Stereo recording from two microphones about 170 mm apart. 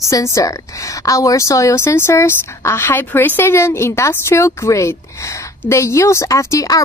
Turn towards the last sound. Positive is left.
turn(degrees=20)  # may be behind; listen again after turning